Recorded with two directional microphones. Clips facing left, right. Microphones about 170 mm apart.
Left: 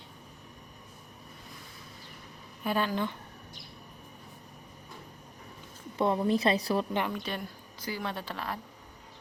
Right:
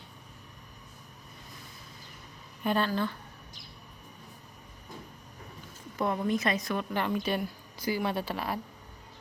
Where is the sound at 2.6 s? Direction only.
10° left (ahead or behind).